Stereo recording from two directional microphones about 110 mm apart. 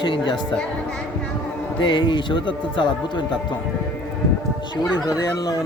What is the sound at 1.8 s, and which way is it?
Speech, 45° left (ahead or behind).